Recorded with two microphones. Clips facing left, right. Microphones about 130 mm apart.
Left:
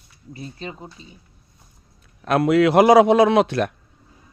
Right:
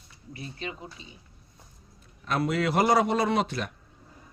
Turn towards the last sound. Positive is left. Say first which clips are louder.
# left 10 dB
turn(degrees=70)  # may be behind; listen again after turning